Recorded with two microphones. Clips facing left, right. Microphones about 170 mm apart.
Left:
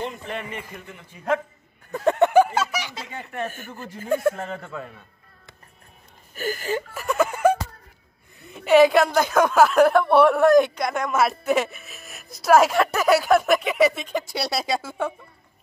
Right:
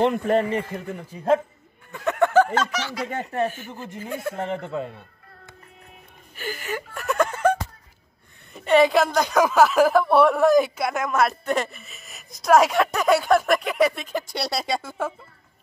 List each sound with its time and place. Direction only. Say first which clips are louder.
0.0 s a man's voice: right 10 dB; 65° right (ahead or behind)
0.3 s a man's voice: right 11 dB; 35° right (ahead or behind)
1.9 s speech: left 5 dB; 40° left (ahead or behind)
2.1 s a sound: left 1 dB; 20° left (ahead or behind)
2.4 s speech: right 1 dB; 10° left (ahead or behind)
3.6 s speech: right 1 dB; 15° right (ahead or behind)
4.1 s speech: left 9 dB; 50° left (ahead or behind)
4.4 s speech: right 5 dB; 25° right (ahead or behind)
6.3 s speech: left 5 dB; 45° left (ahead or behind)
6.9 s a sound: right 2 dB; 5° left (ahead or behind)
8.5 s a woman's voice: left 2 dB; centre (ahead or behind)